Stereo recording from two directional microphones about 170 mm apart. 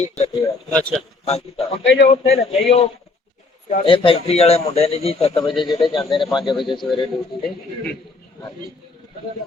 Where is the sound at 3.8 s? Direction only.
30° left (ahead or behind).